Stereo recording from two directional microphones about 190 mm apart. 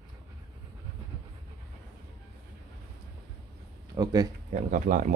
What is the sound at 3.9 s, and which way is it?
Speech, 20° right (ahead or behind).